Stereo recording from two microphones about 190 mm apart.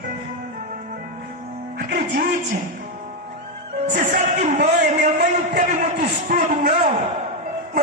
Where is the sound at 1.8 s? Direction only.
50° right (ahead or behind).